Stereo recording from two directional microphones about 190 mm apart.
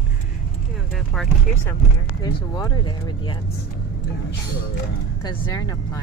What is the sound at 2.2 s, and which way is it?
Speech, 20° left (ahead or behind).